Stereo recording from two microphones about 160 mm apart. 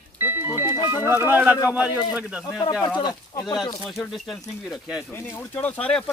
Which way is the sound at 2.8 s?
25° left (ahead or behind).